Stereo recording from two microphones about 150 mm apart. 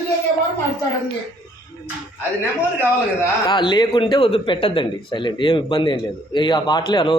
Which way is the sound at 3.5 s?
30° left (ahead or behind).